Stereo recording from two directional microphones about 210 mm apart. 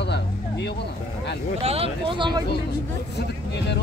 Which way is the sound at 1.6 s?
30° right (ahead or behind).